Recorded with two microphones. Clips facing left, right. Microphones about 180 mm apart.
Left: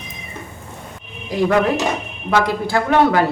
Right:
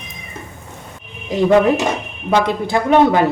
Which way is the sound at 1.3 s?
20° right (ahead or behind).